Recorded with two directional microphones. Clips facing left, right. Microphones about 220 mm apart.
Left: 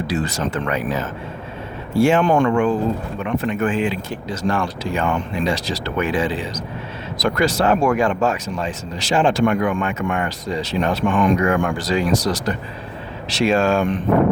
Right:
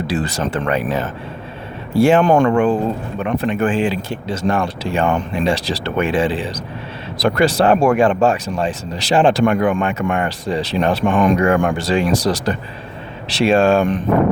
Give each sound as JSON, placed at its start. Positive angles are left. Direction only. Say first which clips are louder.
{"t": 0.1, "sound": "speech", "louder": "right 2 dB", "side_deg": -35}
{"t": 2.0, "sound": "speech", "louder": "right 3 dB", "side_deg": -35}